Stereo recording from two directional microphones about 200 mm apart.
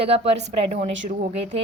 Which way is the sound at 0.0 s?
30° right (ahead or behind).